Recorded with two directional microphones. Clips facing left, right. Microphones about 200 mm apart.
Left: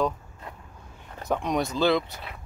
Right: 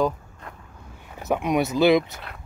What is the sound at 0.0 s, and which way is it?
Vehicle, 5° left (ahead or behind).